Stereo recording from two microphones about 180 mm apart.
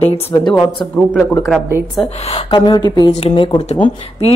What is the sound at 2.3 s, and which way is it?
A woman's voice, 25° left (ahead or behind).